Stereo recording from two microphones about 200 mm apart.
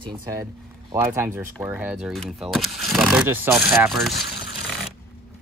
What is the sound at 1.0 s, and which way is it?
Speech, 10° right (ahead or behind).